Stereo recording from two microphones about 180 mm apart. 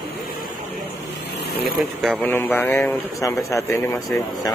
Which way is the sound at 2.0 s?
10° left (ahead or behind).